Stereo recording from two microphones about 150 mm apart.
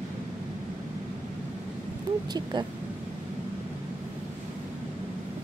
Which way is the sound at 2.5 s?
30° right (ahead or behind).